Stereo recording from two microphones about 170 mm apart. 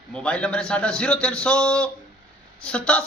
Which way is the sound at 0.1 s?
5° left (ahead or behind).